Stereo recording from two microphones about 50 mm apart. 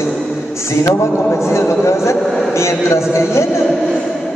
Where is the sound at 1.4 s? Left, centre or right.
Left.